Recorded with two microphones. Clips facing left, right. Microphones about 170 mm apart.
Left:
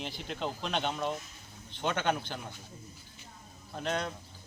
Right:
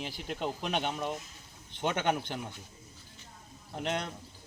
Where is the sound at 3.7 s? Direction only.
20° right (ahead or behind).